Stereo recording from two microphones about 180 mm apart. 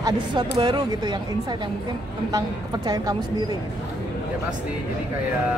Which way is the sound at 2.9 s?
20° right (ahead or behind).